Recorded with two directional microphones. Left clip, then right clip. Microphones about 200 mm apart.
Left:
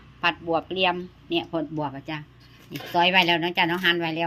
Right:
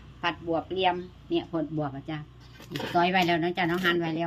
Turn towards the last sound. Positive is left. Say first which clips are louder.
# left 3 dB
turn(degrees=20)  # may be behind; listen again after turning